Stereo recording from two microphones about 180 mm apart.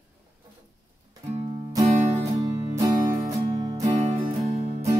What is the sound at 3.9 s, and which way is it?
Music, 40° right (ahead or behind).